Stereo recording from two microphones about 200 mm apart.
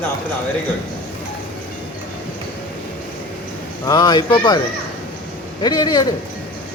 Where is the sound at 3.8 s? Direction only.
20° left (ahead or behind).